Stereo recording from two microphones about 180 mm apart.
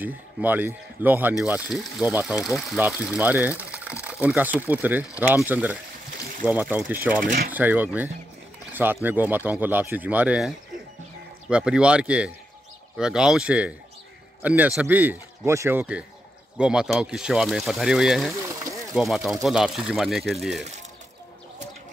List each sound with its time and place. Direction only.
0.0 s speech: 10° right (ahead or behind)
7.2 s speech: 55° right (ahead or behind)
7.5 s speech: 10° right (ahead or behind)